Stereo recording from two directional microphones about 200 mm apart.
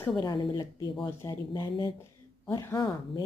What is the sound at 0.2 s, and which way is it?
A woman's voice, 20° left (ahead or behind).